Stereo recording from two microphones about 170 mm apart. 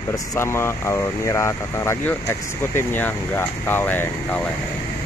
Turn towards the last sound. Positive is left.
turn(degrees=10)  # may be behind; listen again after turning